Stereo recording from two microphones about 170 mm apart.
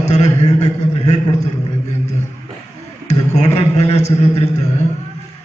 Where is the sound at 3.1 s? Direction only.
40° left (ahead or behind).